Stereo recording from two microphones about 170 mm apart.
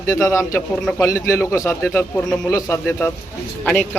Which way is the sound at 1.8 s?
5° left (ahead or behind).